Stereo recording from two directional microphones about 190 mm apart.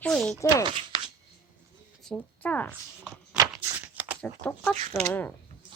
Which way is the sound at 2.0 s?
5° left (ahead or behind).